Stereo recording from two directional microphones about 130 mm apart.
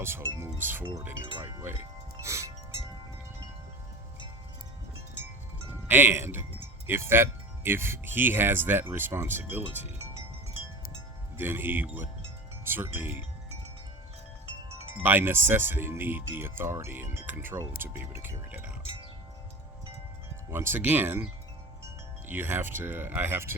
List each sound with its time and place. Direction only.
0.0 s music: 20° right (ahead or behind)
0.9 s speech: 15° right (ahead or behind)
2.2 s wind chime: 20° right (ahead or behind)
5.9 s speech: 15° right (ahead or behind)
11.3 s speech: 15° right (ahead or behind)
15.0 s speech: 15° right (ahead or behind)
20.5 s speech: 15° right (ahead or behind)
22.3 s speech: 15° right (ahead or behind)